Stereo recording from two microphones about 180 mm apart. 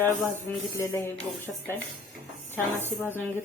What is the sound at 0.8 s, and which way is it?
Speech, 15° left (ahead or behind).